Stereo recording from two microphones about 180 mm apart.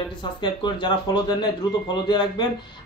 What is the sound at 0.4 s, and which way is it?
Speech, 25° left (ahead or behind).